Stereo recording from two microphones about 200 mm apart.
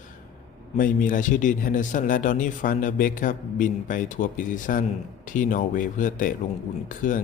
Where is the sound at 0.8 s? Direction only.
40° left (ahead or behind).